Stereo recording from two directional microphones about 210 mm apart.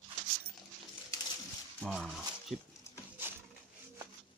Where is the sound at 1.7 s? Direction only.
Centre (ahead or behind).